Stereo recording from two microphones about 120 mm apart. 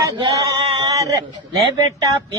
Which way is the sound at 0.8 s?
30° right (ahead or behind).